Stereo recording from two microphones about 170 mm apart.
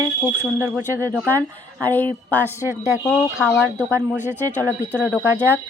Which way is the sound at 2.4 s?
10° left (ahead or behind).